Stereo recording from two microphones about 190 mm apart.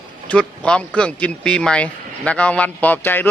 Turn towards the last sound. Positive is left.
turn(degrees=10)  # may be behind; listen again after turning